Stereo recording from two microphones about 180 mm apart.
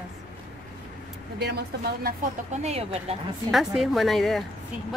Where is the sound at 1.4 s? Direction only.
65° right (ahead or behind).